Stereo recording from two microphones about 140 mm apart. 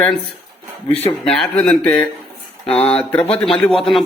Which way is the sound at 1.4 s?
5° left (ahead or behind).